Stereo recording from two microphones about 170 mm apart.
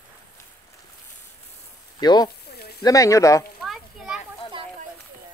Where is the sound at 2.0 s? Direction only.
25° left (ahead or behind).